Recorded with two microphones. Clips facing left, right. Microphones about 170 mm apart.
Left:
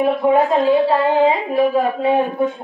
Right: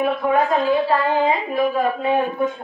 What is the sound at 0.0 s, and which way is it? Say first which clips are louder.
A woman's voice: left 4 dB; 30° left (ahead or behind).